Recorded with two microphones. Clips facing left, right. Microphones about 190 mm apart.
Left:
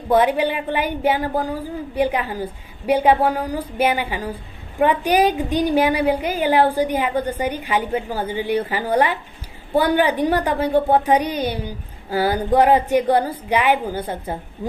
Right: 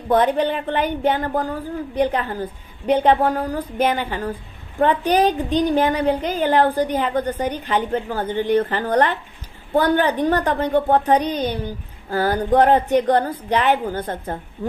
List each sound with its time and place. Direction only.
0.1 s a woman's voice: 10° left (ahead or behind)